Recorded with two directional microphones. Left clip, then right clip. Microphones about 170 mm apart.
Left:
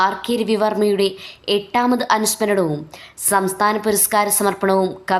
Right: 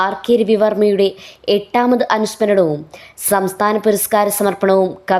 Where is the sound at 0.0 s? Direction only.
20° right (ahead or behind).